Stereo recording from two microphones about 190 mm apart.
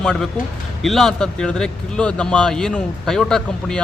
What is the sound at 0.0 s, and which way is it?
A man's voice, 5° left (ahead or behind).